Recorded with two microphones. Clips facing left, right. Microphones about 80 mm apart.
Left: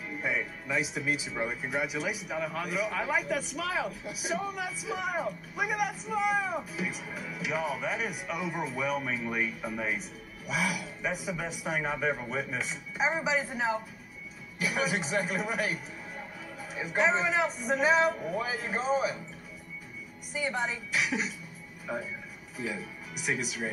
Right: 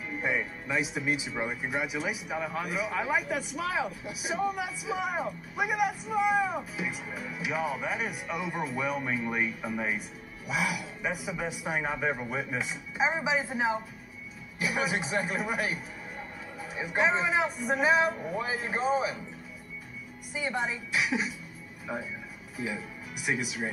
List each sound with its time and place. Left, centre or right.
0.2 s a man's voice: centre
1.3 s a man's voice: centre
18.2 s speech: centre
18.5 s speech: centre
20.3 s speech: centre
21.9 s speech: centre
22.6 s a man's voice: centre